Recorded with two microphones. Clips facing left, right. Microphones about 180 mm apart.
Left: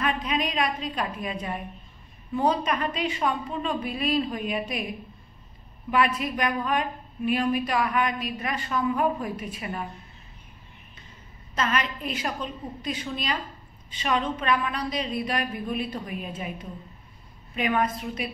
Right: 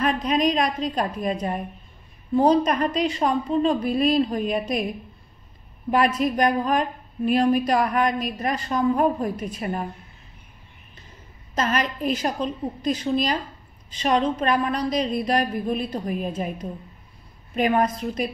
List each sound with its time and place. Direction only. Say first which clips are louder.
0.0 s a woman's voice: right 6 dB; 40° right (ahead or behind)
5.9 s a woman's voice: right 4 dB; 40° right (ahead or behind)
11.5 s a woman's voice: right 3 dB; 40° right (ahead or behind)